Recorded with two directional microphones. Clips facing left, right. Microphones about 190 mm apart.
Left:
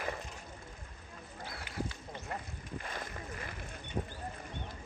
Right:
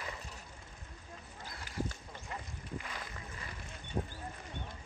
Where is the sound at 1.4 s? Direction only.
65° left (ahead or behind).